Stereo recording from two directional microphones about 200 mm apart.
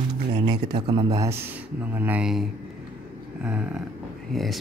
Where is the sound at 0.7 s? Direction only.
20° right (ahead or behind); by 2.4 s 5° right (ahead or behind).